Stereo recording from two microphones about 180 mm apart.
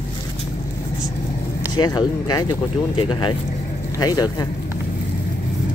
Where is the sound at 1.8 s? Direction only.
25° left (ahead or behind).